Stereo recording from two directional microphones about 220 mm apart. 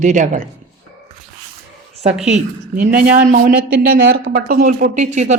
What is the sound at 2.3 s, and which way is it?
Speech, 40° right (ahead or behind).